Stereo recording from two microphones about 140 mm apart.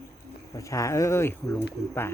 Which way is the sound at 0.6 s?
20° left (ahead or behind).